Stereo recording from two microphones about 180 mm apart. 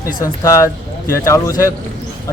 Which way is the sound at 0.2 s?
15° left (ahead or behind).